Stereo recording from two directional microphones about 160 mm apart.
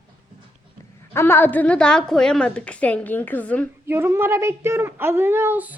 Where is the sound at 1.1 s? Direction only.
15° left (ahead or behind).